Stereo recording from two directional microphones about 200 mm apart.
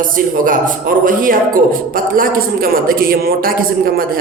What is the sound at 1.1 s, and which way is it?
A man's voice, 45° right (ahead or behind).